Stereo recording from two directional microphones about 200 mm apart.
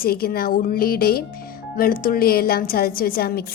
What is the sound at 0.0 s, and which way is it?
Speech, 50° left (ahead or behind).